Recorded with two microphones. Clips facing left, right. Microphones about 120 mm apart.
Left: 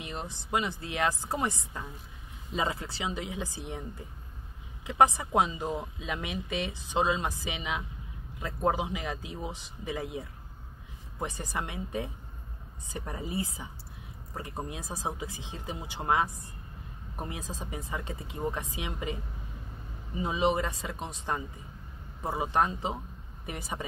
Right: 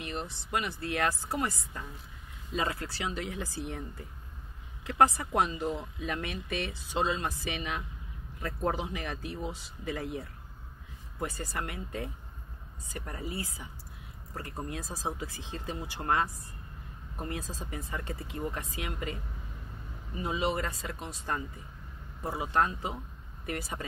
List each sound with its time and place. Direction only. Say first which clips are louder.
0.0 s speech: right 1 dB; 20° left (ahead or behind)
4.8 s speech: left 1 dB; 20° left (ahead or behind)
20.2 s speech: left 3 dB; 20° left (ahead or behind)